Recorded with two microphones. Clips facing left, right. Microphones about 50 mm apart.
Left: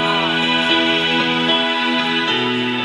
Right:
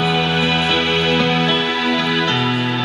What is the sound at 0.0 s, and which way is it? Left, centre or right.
Music, left.